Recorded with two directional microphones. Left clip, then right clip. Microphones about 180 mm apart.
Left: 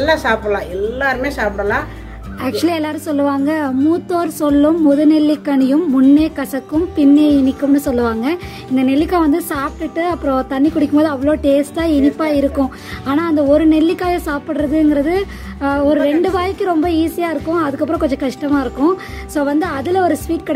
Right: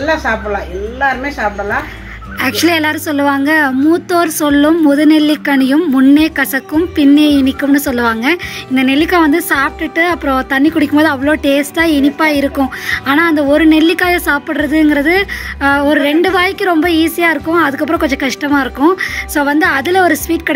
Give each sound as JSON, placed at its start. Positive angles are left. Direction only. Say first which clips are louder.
{"t": 0.0, "sound": "a woman's voice", "louder": "even", "side_deg": 15}
{"t": 2.4, "sound": "speech", "louder": "right 5 dB", "side_deg": 0}